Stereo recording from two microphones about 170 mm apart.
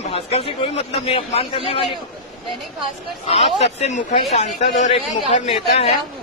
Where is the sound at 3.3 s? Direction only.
40° left (ahead or behind).